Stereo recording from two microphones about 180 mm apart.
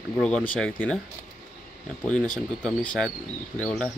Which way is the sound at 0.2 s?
5° left (ahead or behind).